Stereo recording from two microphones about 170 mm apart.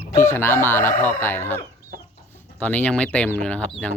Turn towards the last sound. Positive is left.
turn(degrees=5)  # may be behind; listen again after turning